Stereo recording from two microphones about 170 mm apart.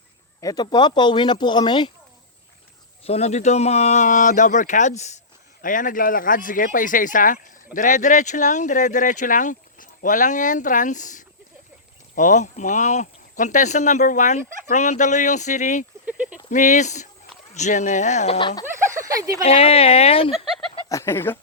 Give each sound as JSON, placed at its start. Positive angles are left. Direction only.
{"t": 0.4, "sound": "speech", "side_deg": 25}
{"t": 3.0, "sound": "speech", "side_deg": 40}
{"t": 16.0, "sound": "cricket", "side_deg": -10}
{"t": 16.5, "sound": "speech", "side_deg": 45}
{"t": 18.3, "sound": "speech", "side_deg": 25}
{"t": 18.6, "sound": "a sound", "side_deg": -15}
{"t": 19.5, "sound": "speech", "side_deg": 35}
{"t": 20.3, "sound": "speech", "side_deg": 0}
{"t": 20.9, "sound": "speech", "side_deg": 15}